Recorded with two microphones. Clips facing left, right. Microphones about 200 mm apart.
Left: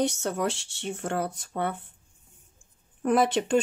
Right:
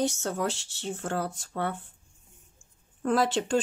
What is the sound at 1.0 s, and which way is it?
Speech, 20° left (ahead or behind).